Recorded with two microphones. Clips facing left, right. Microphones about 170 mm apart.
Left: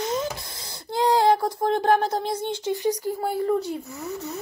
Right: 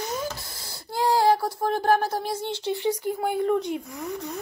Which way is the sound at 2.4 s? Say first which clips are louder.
Left 2 dB; 15° left (ahead or behind).